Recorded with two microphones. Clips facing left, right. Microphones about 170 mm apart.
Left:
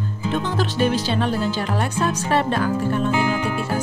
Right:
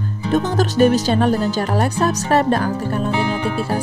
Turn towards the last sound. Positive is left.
turn(degrees=-30)  # may be behind; listen again after turning